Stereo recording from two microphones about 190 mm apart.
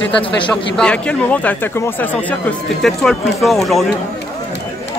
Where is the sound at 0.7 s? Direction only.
5° left (ahead or behind).